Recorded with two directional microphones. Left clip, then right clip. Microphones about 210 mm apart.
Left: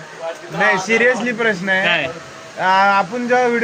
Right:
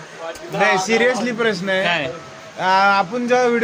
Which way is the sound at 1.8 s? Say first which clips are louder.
Left 2 dB; 20° right (ahead or behind).